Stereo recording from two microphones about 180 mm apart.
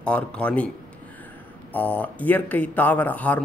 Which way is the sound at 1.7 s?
10° left (ahead or behind).